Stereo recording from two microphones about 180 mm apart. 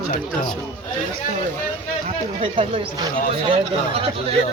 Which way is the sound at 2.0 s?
35° right (ahead or behind).